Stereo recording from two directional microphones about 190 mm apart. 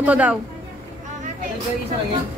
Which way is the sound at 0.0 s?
5° right (ahead or behind).